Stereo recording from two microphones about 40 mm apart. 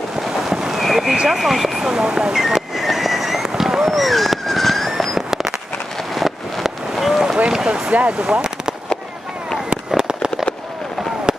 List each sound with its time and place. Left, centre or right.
0.2 s boat: centre
1.3 s speech: centre
1.9 s vehicle: centre
6.1 s a sound: centre
8.2 s speech: right
9.8 s a sound: centre